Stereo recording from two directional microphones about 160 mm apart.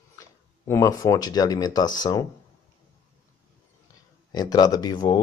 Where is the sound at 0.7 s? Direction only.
20° left (ahead or behind).